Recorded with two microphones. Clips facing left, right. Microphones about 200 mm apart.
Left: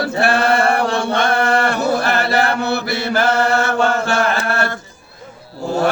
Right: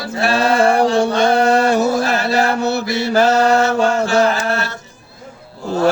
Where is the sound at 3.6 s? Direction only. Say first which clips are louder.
Right 2 dB; 60° left (ahead or behind).